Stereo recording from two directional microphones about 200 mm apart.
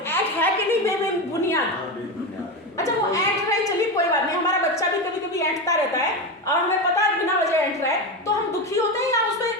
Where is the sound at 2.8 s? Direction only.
15° left (ahead or behind).